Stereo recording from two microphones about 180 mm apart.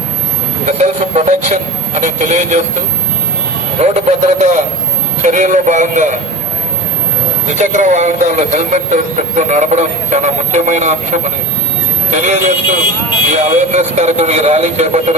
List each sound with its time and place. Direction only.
0.6 s speech: 40° right (ahead or behind)
3.8 s speech: 40° right (ahead or behind)
7.5 s speech: 45° right (ahead or behind)